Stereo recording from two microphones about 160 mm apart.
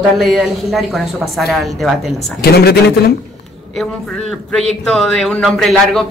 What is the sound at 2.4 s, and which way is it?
Speech, 80° left.